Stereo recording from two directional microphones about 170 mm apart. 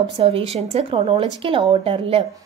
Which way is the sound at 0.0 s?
30° right (ahead or behind).